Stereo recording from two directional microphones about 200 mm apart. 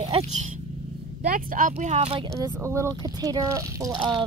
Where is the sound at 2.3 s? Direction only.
15° right (ahead or behind).